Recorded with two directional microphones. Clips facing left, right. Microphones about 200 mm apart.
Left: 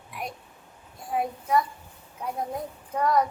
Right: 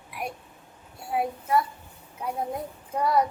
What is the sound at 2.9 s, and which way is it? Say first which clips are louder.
Speech: even; 10° right (ahead or behind).